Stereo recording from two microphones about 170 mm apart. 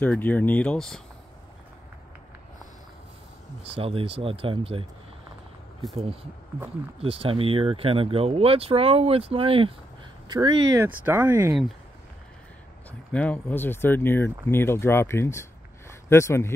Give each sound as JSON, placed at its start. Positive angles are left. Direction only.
{"t": 0.0, "sound": "speech", "side_deg": 10}
{"t": 3.6, "sound": "speech", "side_deg": -35}
{"t": 7.0, "sound": "speech", "side_deg": -35}
{"t": 13.1, "sound": "speech", "side_deg": 10}